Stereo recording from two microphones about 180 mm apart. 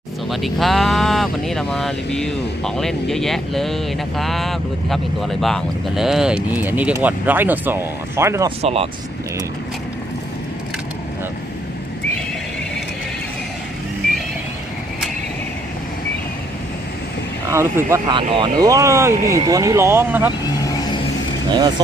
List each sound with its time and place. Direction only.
0.3 s speech: centre (ahead or behind); by 8.4 s 15° right (ahead or behind)
8.4 s speech: 30° right (ahead or behind)
17.5 s speech: 15° right (ahead or behind)
18.1 s speech: 30° right (ahead or behind); by 20.3 s 10° right (ahead or behind)
20.6 s vehicle: 20° left (ahead or behind)